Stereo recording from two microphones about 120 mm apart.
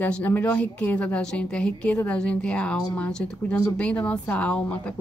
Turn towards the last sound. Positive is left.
turn(degrees=10)  # may be behind; listen again after turning